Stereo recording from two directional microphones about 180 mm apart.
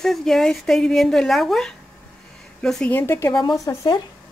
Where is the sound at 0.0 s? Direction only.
Centre (ahead or behind).